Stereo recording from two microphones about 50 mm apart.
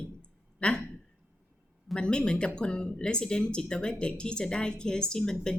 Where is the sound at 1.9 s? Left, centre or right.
Centre.